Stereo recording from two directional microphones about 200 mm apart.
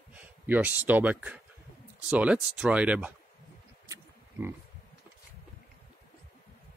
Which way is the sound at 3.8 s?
15° right (ahead or behind).